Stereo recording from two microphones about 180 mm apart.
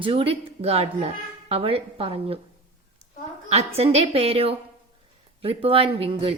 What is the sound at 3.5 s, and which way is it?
A woman's voice, 35° right (ahead or behind).